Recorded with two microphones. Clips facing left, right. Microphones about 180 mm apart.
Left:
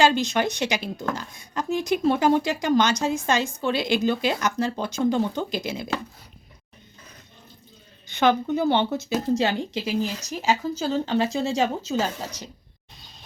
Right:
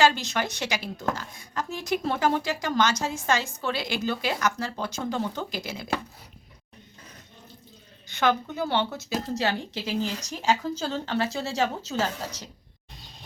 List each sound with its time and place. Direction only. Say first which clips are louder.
0.0 s speech: left 3 dB; 20° left (ahead or behind)
8.1 s speech: left 4 dB; 20° left (ahead or behind)